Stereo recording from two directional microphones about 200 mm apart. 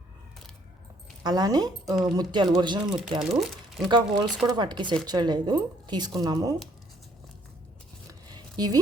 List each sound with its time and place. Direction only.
1.2 s speech: 20° right (ahead or behind)
3.2 s speech: 5° right (ahead or behind)
3.8 s speech: 25° right (ahead or behind)
8.3 s a sound: 20° right (ahead or behind)